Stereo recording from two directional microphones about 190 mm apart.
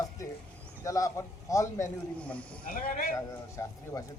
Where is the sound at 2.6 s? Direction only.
45° left (ahead or behind).